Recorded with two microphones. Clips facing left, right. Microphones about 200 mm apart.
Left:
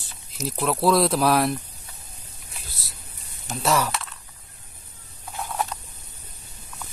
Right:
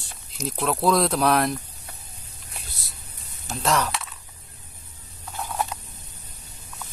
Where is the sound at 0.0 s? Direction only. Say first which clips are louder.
Even; centre (ahead or behind).